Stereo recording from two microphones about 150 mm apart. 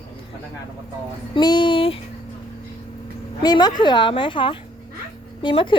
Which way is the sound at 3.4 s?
25° left (ahead or behind).